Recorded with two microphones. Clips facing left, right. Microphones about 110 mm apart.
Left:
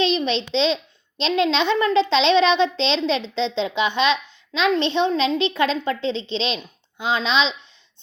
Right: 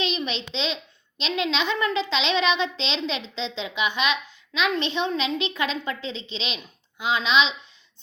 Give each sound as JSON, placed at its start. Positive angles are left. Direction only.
{"t": 0.3, "sound": "a child's voice", "side_deg": 30}